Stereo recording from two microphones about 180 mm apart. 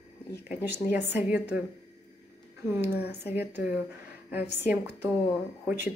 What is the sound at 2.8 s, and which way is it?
Speech, 65° left (ahead or behind).